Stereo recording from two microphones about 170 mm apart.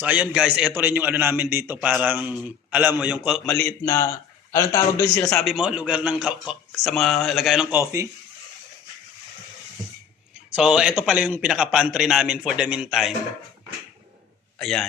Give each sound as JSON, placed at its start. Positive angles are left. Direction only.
{"t": 0.0, "sound": "a man's voice", "side_deg": -10}
{"t": 3.5, "sound": "a man's voice", "side_deg": 10}
{"t": 5.3, "sound": "speech", "side_deg": 0}
{"t": 10.5, "sound": "speech", "side_deg": -5}
{"t": 14.6, "sound": "speech", "side_deg": 0}